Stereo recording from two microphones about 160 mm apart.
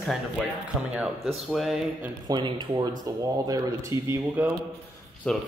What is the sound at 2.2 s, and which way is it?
Speech, 25° right (ahead or behind).